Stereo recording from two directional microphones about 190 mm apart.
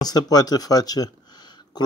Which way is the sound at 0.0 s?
20° left (ahead or behind).